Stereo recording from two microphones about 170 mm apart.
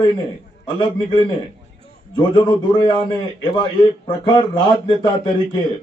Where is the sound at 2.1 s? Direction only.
25° left (ahead or behind).